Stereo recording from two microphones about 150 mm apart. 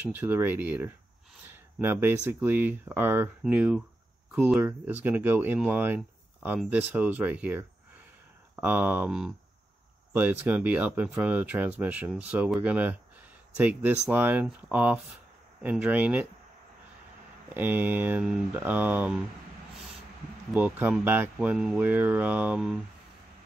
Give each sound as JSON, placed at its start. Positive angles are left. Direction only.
{"t": 0.0, "sound": "speech", "side_deg": -15}
{"t": 10.4, "sound": "speech", "side_deg": -10}
{"t": 17.6, "sound": "speech", "side_deg": -10}
{"t": 20.5, "sound": "speech", "side_deg": -10}